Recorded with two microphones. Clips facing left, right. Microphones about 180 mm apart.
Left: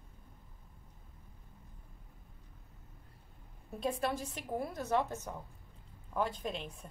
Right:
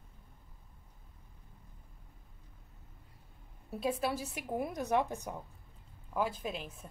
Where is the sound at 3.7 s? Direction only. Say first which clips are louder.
Right 1 dB; 5° right (ahead or behind).